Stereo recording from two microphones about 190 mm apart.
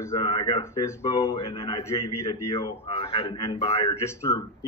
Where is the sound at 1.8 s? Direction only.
15° left (ahead or behind).